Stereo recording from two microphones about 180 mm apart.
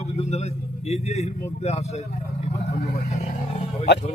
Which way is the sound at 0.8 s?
35° left (ahead or behind).